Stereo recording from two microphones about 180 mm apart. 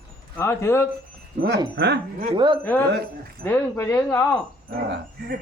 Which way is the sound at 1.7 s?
60° right (ahead or behind).